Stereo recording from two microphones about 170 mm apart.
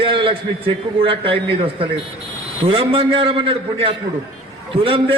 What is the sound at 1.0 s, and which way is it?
A man's voice, 30° right (ahead or behind).